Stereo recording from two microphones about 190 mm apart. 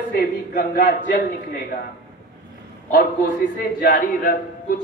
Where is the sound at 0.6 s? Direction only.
50° left (ahead or behind).